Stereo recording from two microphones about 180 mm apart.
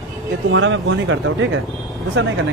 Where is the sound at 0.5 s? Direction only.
90° right.